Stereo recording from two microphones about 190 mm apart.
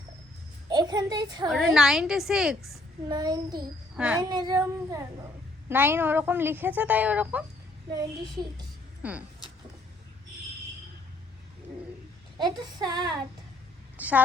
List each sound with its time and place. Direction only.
0.7 s a woman's voice: 20° right (ahead or behind)
1.5 s a woman's voice: centre (ahead or behind)
3.1 s speech: 20° right (ahead or behind)
3.9 s speech: 5° right (ahead or behind)
4.2 s a woman's voice: 20° right (ahead or behind)
7.9 s speech: 20° right (ahead or behind)
9.0 s speech: 5° right (ahead or behind)
12.4 s speech: 20° right (ahead or behind)
13.9 s a sound: 10° right (ahead or behind)